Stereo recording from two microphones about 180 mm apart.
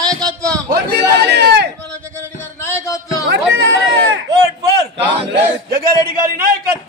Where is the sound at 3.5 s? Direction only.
90° right.